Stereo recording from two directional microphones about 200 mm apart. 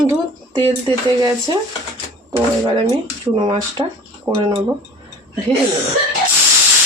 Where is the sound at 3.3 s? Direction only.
25° right (ahead or behind).